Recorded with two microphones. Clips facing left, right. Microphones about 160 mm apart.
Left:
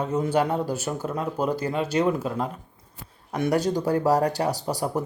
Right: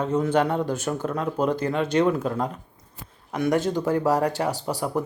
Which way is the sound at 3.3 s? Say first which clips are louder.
Even; 35° left (ahead or behind).